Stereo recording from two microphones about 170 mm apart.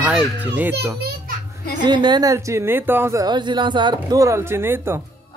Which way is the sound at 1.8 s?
25° right (ahead or behind).